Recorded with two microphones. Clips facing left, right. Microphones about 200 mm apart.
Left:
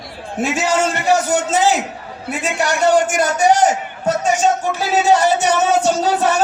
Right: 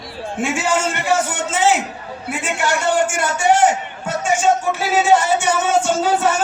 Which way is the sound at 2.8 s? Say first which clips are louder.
Left 7 dB; 40° left (ahead or behind).